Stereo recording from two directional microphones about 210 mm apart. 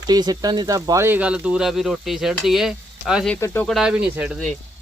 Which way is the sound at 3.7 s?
5° right (ahead or behind).